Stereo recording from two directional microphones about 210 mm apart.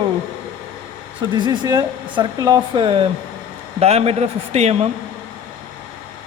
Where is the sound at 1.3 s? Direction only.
20° right (ahead or behind).